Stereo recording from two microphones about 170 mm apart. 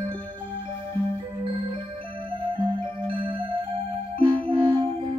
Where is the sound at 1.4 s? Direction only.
30° right (ahead or behind).